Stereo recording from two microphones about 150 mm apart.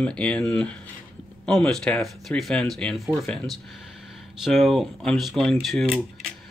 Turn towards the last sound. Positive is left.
turn(degrees=0)  # may be behind; listen again after turning